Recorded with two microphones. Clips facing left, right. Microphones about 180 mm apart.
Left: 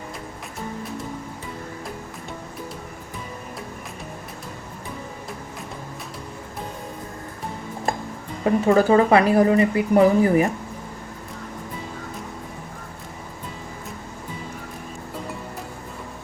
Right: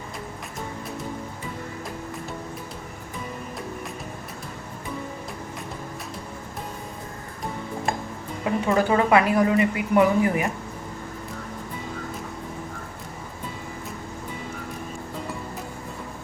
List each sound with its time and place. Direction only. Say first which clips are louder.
8.4 s speech: left 5 dB; 40° left (ahead or behind)